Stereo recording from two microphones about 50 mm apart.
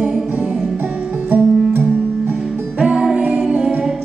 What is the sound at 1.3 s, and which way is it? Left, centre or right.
Music, right.